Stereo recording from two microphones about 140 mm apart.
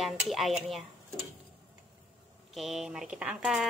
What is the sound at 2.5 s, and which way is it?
Speech, centre (ahead or behind).